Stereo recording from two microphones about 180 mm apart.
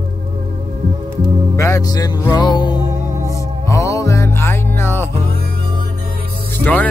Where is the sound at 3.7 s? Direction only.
15° left (ahead or behind).